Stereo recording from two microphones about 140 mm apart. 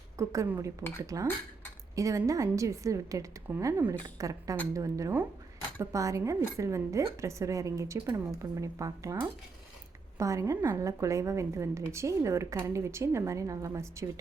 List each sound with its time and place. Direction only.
0.2 s a woman's voice: 20° right (ahead or behind)